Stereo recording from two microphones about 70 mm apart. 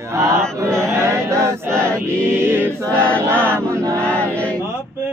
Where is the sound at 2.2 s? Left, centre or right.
Right.